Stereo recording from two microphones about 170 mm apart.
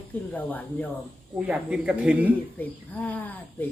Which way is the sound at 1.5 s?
5° right (ahead or behind).